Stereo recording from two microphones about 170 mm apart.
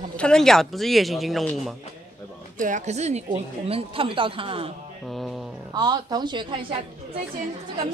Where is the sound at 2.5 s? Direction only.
50° right (ahead or behind); by 4.7 s 35° right (ahead or behind).